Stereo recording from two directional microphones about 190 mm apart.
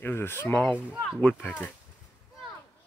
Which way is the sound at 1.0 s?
5° left (ahead or behind).